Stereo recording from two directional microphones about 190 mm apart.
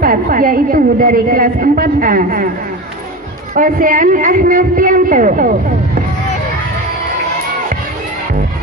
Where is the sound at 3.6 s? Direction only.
45° right (ahead or behind).